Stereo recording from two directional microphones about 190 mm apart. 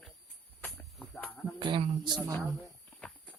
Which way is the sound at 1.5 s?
25° right (ahead or behind).